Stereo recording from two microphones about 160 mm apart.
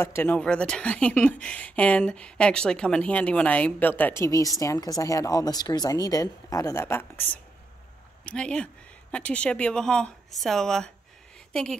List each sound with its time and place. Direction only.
0.0 s a woman's voice: 15° left (ahead or behind)